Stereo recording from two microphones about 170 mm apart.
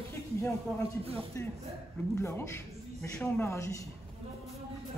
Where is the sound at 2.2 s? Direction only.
15° left (ahead or behind).